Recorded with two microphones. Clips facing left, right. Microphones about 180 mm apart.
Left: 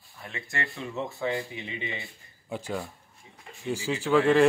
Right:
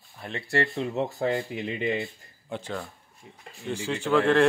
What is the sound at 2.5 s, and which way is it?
Speech, 10° left (ahead or behind).